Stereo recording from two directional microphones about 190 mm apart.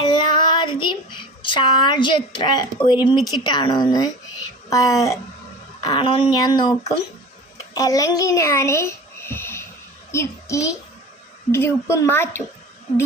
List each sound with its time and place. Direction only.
0.0 s child singing: 20° left (ahead or behind)
3.2 s a woman's voice: 20° left (ahead or behind)